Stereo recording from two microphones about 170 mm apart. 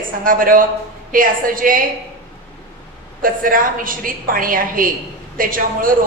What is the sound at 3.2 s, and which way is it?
A man's voice, 55° right (ahead or behind).